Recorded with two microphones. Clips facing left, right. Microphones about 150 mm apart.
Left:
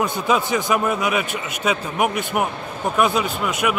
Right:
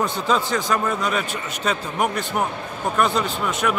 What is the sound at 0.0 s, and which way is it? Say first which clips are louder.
A man's voice: left 1 dB; 15° left (ahead or behind).